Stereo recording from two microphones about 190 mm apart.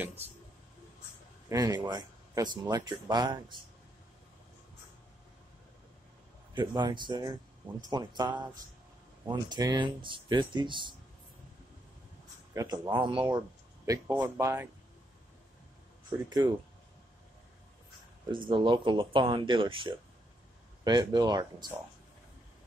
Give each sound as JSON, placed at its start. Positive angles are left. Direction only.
{"t": 1.5, "sound": "speech", "side_deg": -20}
{"t": 6.5, "sound": "speech", "side_deg": -25}
{"t": 12.5, "sound": "speech", "side_deg": -20}
{"t": 13.8, "sound": "speech", "side_deg": -15}
{"t": 16.3, "sound": "speech", "side_deg": -20}
{"t": 18.3, "sound": "speech", "side_deg": -25}